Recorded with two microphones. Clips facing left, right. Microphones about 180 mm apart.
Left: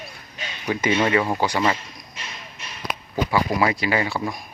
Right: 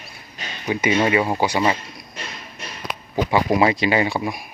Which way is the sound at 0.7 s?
15° right (ahead or behind).